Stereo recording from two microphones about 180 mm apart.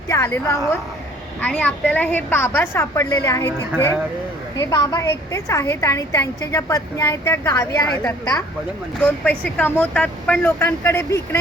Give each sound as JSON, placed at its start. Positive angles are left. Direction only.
{"t": 0.1, "sound": "a woman's voice", "side_deg": 15}
{"t": 9.0, "sound": "a woman's voice", "side_deg": 5}